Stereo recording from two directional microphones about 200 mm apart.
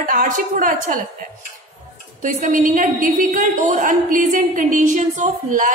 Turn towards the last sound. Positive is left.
turn(degrees=-40)  # may be behind; listen again after turning